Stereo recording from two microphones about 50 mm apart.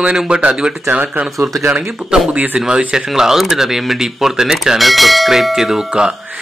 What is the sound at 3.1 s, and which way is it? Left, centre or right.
Speech, centre.